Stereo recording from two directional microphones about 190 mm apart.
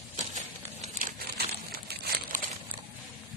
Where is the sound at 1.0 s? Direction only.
55° right (ahead or behind).